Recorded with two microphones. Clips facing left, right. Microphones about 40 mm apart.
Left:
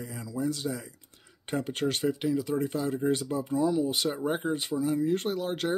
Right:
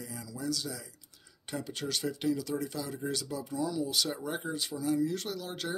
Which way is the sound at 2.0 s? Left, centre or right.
Left.